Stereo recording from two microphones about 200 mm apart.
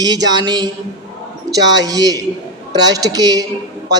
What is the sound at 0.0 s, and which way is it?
A woman's voice, 20° right (ahead or behind).